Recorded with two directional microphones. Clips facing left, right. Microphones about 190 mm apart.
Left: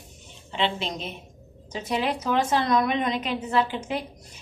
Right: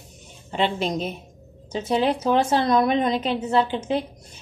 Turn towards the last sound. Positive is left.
turn(degrees=-25)  # may be behind; listen again after turning